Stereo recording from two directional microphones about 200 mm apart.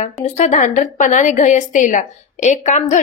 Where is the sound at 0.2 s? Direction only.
35° left (ahead or behind).